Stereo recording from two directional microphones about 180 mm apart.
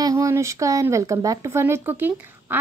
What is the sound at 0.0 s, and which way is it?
Speech, 15° right (ahead or behind).